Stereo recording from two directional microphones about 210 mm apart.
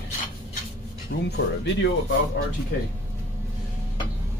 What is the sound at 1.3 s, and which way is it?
Speech, 55° left (ahead or behind).